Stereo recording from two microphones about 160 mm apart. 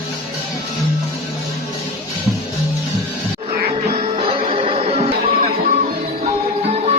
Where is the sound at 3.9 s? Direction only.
40° right (ahead or behind).